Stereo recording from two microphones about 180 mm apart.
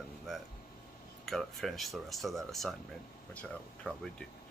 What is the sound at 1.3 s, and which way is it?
Speech, centre (ahead or behind).